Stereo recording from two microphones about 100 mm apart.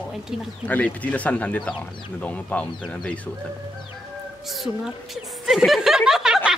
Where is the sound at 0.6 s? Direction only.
15° left (ahead or behind).